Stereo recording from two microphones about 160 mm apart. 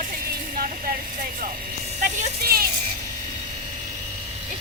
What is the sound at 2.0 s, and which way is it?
Speech, 60° right (ahead or behind).